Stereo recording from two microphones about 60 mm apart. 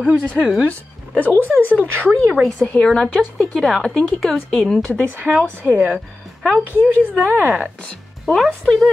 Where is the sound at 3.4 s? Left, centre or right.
Centre.